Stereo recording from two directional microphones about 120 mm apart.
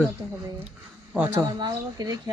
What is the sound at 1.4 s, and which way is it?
Speech, 35° right (ahead or behind).